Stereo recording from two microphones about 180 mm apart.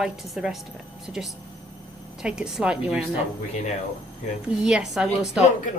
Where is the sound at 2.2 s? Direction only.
5° right (ahead or behind).